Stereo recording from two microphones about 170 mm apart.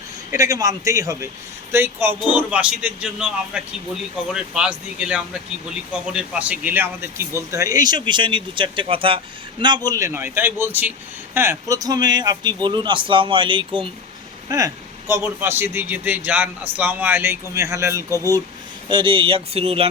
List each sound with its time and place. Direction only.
0.3 s a man's voice: 20° right (ahead or behind)
14.5 s a man's voice: 20° right (ahead or behind)
18.9 s speech: 30° right (ahead or behind)